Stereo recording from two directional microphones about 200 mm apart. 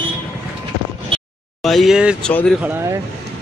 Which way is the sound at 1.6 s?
Centre (ahead or behind).